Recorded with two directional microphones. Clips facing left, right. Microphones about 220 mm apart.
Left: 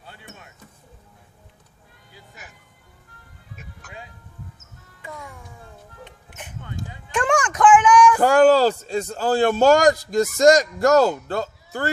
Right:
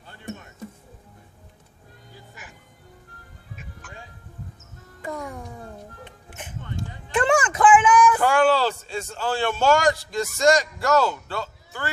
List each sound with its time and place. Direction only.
3.6 s music: 40° left (ahead or behind)
5.0 s music: 45° right (ahead or behind)
7.1 s a sound: 5° right (ahead or behind)
8.2 s a man's voice: 40° left (ahead or behind)